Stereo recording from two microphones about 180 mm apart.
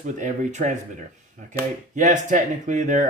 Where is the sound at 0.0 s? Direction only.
45° right (ahead or behind).